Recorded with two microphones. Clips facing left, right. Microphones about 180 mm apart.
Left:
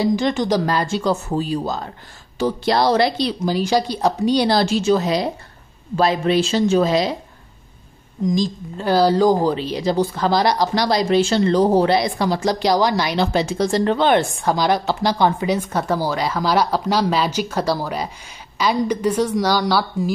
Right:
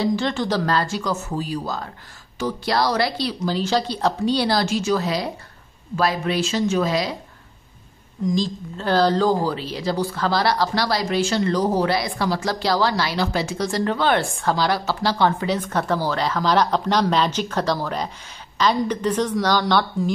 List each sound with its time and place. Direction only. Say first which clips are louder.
0.0 s speech: left 3 dB; 15° left (ahead or behind)
8.3 s speech: left 2 dB; 15° left (ahead or behind)